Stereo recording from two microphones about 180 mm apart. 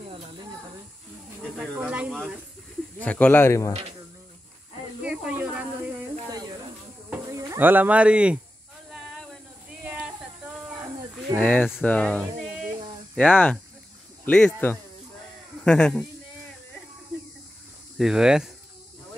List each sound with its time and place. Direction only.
1.8 s speech: 5° right (ahead or behind)
3.0 s speech: 10° left (ahead or behind)
5.0 s snake: 10° right (ahead or behind)
6.3 s snake: 20° right (ahead or behind)
7.1 s a sound: 15° right (ahead or behind)
9.8 s a sound: 5° right (ahead or behind)
11.3 s speech: 10° left (ahead or behind)
12.6 s a sound: 5° left (ahead or behind)
14.2 s speech: 10° left (ahead or behind)
17.9 s speech: centre (ahead or behind)